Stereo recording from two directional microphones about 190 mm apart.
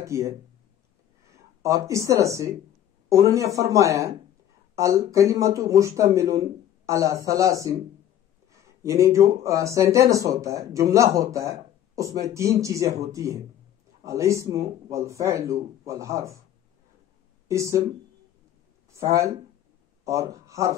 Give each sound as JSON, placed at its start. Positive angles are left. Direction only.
{"t": 0.0, "sound": "speech", "side_deg": -15}
{"t": 1.6, "sound": "speech", "side_deg": -15}
{"t": 17.5, "sound": "speech", "side_deg": -15}
{"t": 18.9, "sound": "speech", "side_deg": -15}